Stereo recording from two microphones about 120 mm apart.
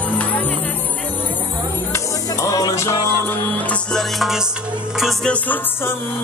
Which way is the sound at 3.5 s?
10° left (ahead or behind).